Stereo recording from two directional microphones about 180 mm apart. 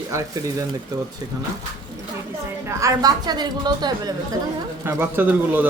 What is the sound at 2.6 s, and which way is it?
A woman's voice, 20° right (ahead or behind).